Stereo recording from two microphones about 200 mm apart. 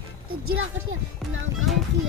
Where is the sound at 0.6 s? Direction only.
75° right (ahead or behind).